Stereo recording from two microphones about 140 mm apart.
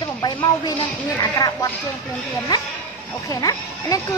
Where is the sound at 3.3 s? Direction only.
25° left (ahead or behind).